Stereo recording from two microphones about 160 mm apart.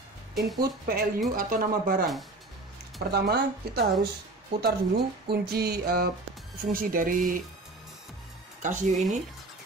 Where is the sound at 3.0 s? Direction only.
80° right.